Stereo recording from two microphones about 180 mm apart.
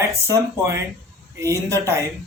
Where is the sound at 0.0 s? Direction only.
15° right (ahead or behind).